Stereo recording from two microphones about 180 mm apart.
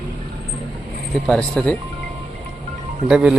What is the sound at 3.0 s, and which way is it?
Speech, 5° right (ahead or behind).